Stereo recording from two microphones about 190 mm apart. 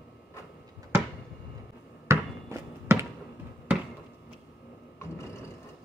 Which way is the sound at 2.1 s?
15° right (ahead or behind).